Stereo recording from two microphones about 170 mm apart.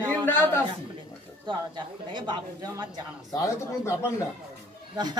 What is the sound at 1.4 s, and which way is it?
Speech, 25° right (ahead or behind).